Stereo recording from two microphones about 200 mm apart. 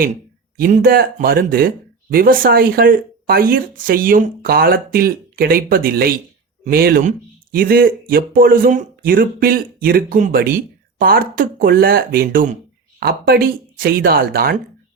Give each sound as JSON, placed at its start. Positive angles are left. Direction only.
{"t": 0.5, "sound": "speech", "side_deg": -45}